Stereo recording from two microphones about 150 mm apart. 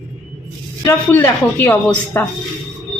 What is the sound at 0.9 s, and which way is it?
Speech, 15° left (ahead or behind).